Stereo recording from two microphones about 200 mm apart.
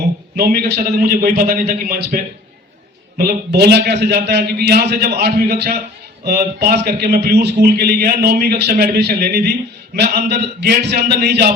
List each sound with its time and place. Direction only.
0.3 s a man's voice: 45° right (ahead or behind)